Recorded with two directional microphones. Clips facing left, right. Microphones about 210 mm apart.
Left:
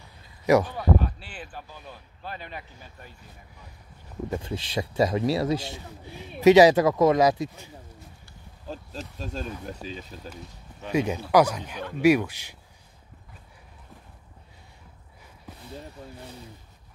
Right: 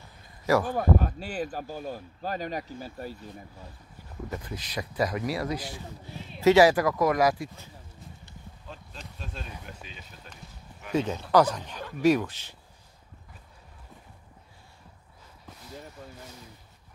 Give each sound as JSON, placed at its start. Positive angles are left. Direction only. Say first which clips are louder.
{"t": 0.7, "sound": "speech", "louder": "even", "side_deg": -45}
{"t": 4.3, "sound": "speech", "louder": "left 6 dB", "side_deg": 25}
{"t": 8.7, "sound": "insect", "louder": "left 8 dB", "side_deg": 40}
{"t": 9.2, "sound": "speech", "louder": "left 8 dB", "side_deg": 40}
{"t": 10.9, "sound": "speech", "louder": "left 2 dB", "side_deg": 10}